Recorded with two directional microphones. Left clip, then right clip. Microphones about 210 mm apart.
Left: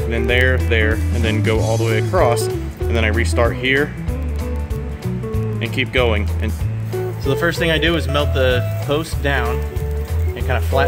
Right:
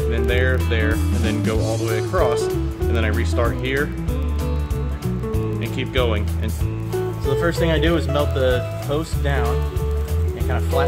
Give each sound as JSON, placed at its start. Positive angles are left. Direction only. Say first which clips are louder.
{"t": 0.1, "sound": "speech", "louder": "left 6 dB", "side_deg": 30}
{"t": 5.8, "sound": "speech", "louder": "left 5 dB", "side_deg": 30}
{"t": 7.2, "sound": "speech", "louder": "left 3 dB", "side_deg": 50}